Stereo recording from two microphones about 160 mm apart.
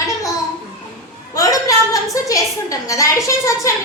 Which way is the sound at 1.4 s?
20° left (ahead or behind).